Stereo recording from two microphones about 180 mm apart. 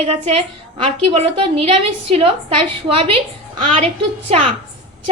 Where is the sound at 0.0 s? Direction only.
35° right (ahead or behind).